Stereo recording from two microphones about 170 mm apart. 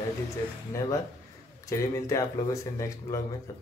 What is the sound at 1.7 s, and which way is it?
Speech, 20° left (ahead or behind).